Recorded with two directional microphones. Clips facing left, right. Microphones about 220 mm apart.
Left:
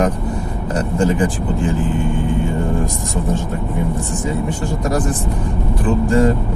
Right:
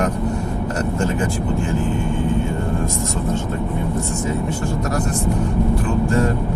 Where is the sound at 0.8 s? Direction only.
15° left (ahead or behind).